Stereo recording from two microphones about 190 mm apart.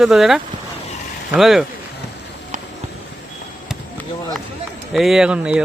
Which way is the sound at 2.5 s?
40° right (ahead or behind).